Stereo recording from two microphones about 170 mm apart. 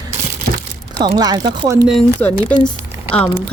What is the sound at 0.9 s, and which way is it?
Speech, 25° right (ahead or behind).